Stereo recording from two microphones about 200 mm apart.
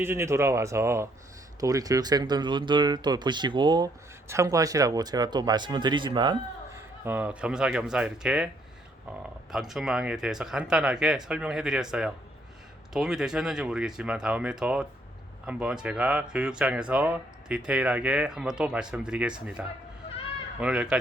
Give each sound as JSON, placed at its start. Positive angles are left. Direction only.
{"t": 0.0, "sound": "speech", "side_deg": -10}
{"t": 6.7, "sound": "speech", "side_deg": -10}
{"t": 9.5, "sound": "speech", "side_deg": 0}